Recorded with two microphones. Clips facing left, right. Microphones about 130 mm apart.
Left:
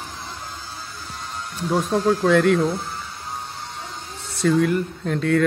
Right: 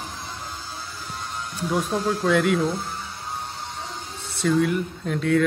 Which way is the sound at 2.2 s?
5° right (ahead or behind).